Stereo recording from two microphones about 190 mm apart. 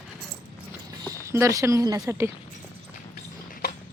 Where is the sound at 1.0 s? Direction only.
15° right (ahead or behind).